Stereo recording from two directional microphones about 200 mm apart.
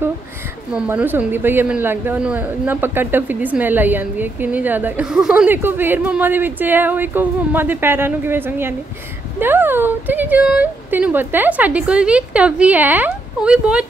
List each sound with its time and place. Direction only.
0.7 s a woman's voice: 10° right (ahead or behind)